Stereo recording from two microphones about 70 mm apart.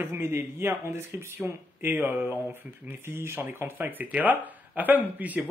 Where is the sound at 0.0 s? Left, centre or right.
Right.